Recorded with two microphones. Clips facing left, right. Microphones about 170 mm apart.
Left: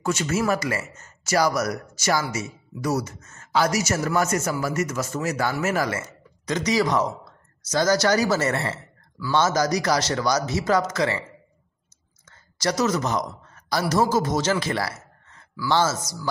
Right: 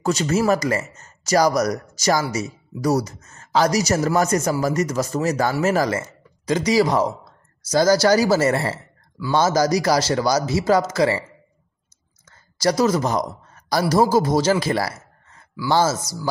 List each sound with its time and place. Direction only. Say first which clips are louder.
0.0 s speech: right 4 dB; 35° right (ahead or behind)
12.3 s speech: right 5 dB; 35° right (ahead or behind)